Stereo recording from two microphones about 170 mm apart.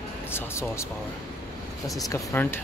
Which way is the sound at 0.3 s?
15° left (ahead or behind).